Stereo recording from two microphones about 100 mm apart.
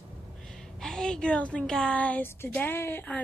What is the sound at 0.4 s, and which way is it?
A woman's voice, 5° left (ahead or behind).